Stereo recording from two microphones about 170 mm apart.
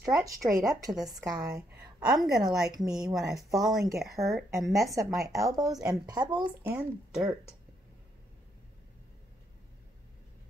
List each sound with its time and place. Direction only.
0.0 s speech: 20° right (ahead or behind)
1.5 s speech: 5° right (ahead or behind)
5.4 s speech: 20° right (ahead or behind)
6.6 s speech: 10° right (ahead or behind)